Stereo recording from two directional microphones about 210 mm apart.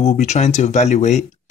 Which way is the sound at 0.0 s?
35° left (ahead or behind).